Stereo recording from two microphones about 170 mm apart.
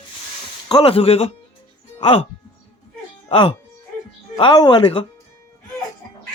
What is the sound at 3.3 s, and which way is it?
Speech, 35° left (ahead or behind).